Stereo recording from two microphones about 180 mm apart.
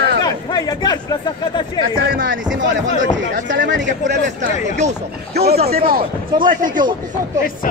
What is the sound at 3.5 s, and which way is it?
Speech, 80° right.